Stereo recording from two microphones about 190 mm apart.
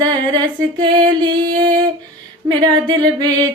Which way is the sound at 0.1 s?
25° right (ahead or behind).